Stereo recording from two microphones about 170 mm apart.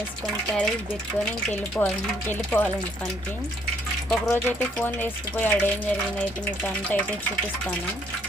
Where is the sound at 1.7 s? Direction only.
10° left (ahead or behind).